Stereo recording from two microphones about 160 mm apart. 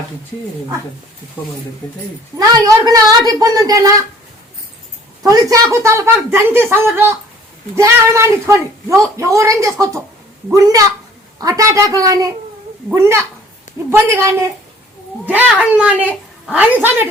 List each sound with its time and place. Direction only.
2.4 s a woman's voice: 20° right (ahead or behind)
5.2 s a woman's voice: 20° right (ahead or behind)